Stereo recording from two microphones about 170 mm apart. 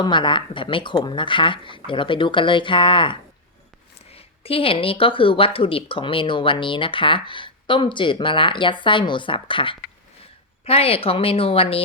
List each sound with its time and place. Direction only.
0.0 s a woman's voice: 30° left (ahead or behind)